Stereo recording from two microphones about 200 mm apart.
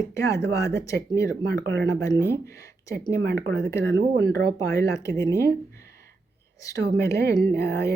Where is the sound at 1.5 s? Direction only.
55° right (ahead or behind).